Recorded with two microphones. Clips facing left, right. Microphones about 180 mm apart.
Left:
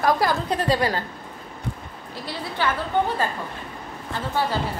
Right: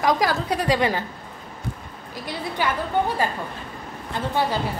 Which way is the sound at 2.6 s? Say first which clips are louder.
Even; 15° right (ahead or behind).